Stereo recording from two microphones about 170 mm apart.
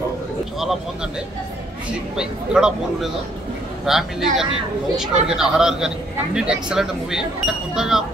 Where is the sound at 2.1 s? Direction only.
5° right (ahead or behind).